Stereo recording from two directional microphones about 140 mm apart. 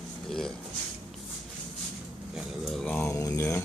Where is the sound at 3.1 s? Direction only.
25° left (ahead or behind).